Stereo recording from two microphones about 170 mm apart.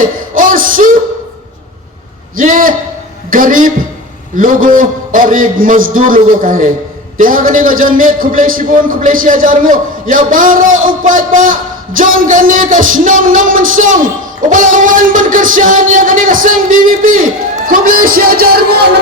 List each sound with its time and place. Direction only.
0.0 s music: 50° right (ahead or behind)
2.3 s a man's voice: 50° right (ahead or behind); by 18.9 s 65° right (ahead or behind)